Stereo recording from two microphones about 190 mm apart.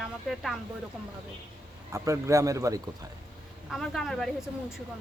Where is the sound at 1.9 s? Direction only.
15° right (ahead or behind).